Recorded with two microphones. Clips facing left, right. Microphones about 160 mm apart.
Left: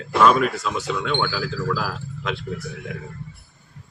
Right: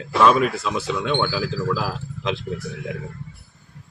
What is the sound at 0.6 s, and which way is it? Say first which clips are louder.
Speech: right 1 dB; 20° right (ahead or behind).